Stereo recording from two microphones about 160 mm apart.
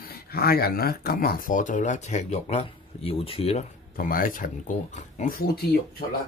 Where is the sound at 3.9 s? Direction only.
60° left (ahead or behind).